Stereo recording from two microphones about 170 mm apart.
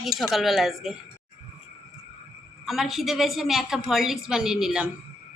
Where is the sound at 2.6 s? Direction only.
Centre (ahead or behind).